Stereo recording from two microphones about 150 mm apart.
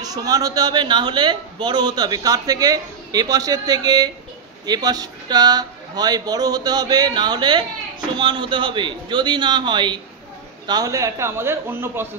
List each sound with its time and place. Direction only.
0.0 s speech: 25° right (ahead or behind)